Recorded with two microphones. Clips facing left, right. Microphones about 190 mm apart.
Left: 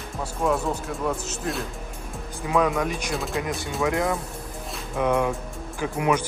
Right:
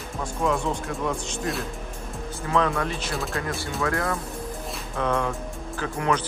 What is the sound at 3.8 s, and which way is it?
Speech, 15° left (ahead or behind).